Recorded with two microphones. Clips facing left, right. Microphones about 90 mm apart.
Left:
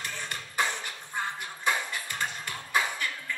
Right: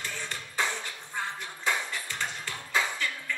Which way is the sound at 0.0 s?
15° left (ahead or behind).